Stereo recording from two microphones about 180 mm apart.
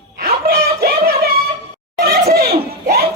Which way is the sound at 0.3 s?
60° right (ahead or behind).